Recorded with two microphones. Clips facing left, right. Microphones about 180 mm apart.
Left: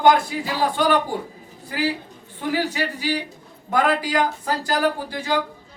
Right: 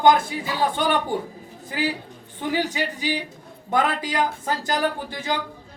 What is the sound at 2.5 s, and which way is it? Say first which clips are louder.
Speech: left 1 dB; 20° right (ahead or behind).